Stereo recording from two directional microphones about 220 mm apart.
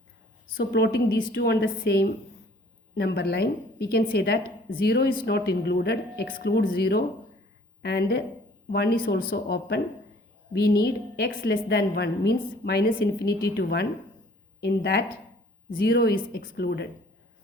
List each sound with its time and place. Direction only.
0.5 s a woman's voice: 45° left (ahead or behind)